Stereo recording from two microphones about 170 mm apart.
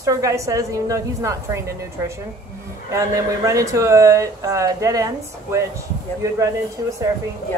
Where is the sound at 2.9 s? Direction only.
20° right (ahead or behind).